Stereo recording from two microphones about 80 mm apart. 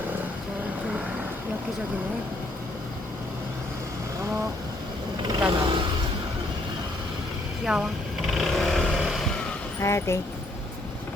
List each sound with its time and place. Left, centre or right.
5.3 s vehicle: right
7.6 s speech: centre
8.3 s vehicle: centre
8.9 s vehicle: centre
9.8 s speech: left